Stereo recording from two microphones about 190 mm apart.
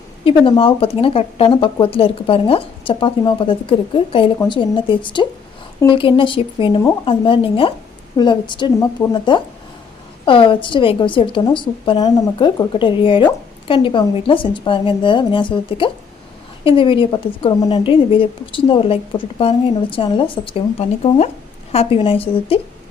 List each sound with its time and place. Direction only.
0.3 s a woman's voice: 30° left (ahead or behind)